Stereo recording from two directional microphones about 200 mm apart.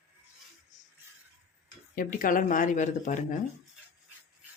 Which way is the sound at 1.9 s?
45° left (ahead or behind).